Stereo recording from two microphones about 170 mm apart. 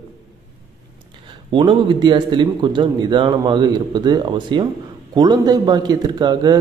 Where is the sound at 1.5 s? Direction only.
30° right (ahead or behind).